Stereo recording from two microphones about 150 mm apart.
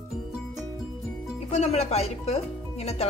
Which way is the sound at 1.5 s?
45° left (ahead or behind).